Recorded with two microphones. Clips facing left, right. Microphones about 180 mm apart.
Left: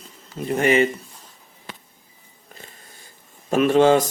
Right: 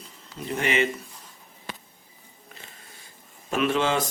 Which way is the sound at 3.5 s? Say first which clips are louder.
Left 9 dB; 40° left (ahead or behind).